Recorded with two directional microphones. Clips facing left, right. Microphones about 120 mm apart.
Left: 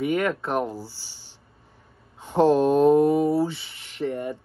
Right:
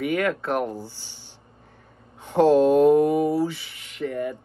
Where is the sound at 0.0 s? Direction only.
20° left (ahead or behind).